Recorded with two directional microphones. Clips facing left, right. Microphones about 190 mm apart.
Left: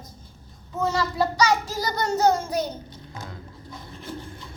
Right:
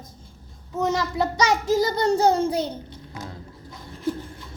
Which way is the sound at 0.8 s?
20° right (ahead or behind).